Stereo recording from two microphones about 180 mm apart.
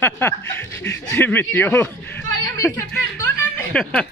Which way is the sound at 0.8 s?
75° left (ahead or behind).